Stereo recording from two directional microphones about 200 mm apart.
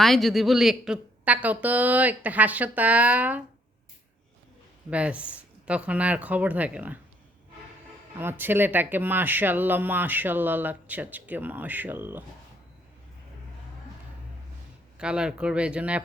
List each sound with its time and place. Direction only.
0.0 s speech: centre (ahead or behind)
4.9 s speech: 5° right (ahead or behind)
8.2 s speech: 10° right (ahead or behind)
14.9 s speech: 5° right (ahead or behind)